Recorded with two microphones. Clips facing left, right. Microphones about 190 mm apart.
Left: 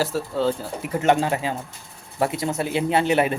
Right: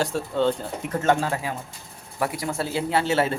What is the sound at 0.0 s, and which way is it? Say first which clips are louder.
Speech: even; 5° left (ahead or behind).